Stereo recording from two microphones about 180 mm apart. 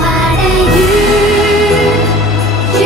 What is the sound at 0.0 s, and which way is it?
Music, centre (ahead or behind).